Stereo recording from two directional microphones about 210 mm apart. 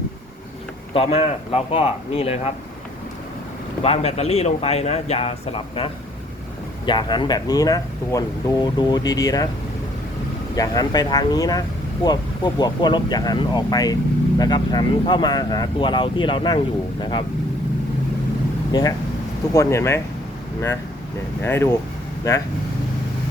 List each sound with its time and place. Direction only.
0.9 s speech: 30° left (ahead or behind)
3.8 s speech: 30° left (ahead or behind)
10.5 s speech: 20° left (ahead or behind)
18.7 s speech: 15° left (ahead or behind)
21.4 s speech: 10° left (ahead or behind)